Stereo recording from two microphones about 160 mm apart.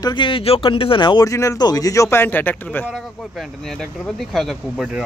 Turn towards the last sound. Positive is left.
turn(degrees=-5)  # may be behind; listen again after turning